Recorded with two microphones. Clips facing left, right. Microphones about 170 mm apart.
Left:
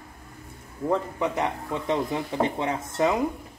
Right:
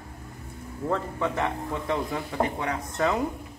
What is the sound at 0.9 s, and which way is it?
Speech, 15° left (ahead or behind).